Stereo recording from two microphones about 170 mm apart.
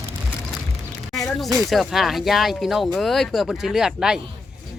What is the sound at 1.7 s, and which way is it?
Speech, centre (ahead or behind).